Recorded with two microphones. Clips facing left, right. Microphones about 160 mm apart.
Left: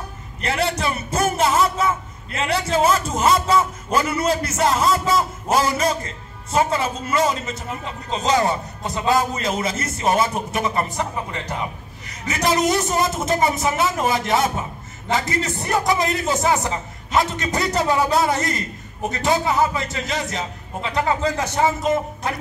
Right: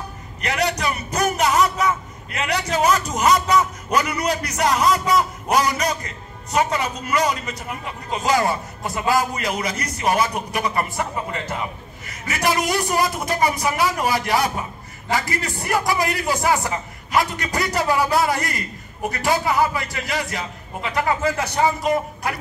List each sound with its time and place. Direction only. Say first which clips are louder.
0.4 s a man's voice: even; 30° left (ahead or behind)